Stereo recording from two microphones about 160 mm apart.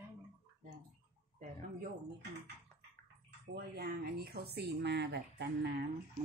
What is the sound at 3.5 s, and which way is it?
Speech, 85° right.